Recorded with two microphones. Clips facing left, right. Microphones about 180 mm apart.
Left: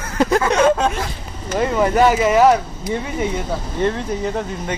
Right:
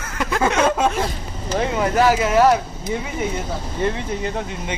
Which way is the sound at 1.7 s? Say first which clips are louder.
Left 3 dB; centre (ahead or behind).